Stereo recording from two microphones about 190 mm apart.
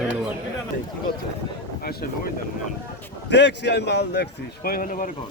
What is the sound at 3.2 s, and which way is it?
A man's voice, 65° left (ahead or behind).